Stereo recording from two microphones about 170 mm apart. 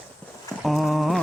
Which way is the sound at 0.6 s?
Centre (ahead or behind).